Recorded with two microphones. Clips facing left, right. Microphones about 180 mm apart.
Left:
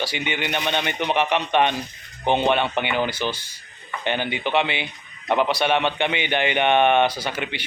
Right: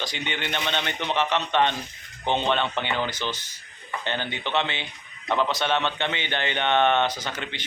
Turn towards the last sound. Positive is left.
turn(degrees=10)  # may be behind; listen again after turning